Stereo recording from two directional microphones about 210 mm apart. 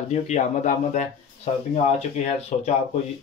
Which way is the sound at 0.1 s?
35° left (ahead or behind).